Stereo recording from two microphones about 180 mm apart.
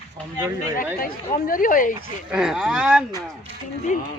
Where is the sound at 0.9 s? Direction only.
50° left (ahead or behind).